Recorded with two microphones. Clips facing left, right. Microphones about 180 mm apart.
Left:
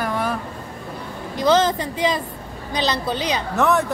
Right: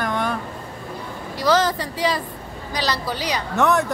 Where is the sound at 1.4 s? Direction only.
20° left (ahead or behind).